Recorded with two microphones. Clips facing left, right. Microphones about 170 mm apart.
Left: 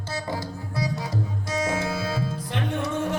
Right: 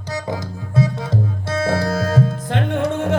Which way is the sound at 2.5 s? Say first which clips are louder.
Right 7 dB; 70° right (ahead or behind).